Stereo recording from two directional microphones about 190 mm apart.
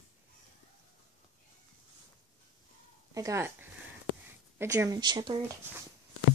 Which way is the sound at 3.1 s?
15° right (ahead or behind).